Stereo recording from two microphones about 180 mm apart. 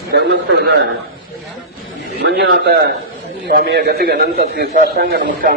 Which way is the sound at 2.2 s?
70° right (ahead or behind).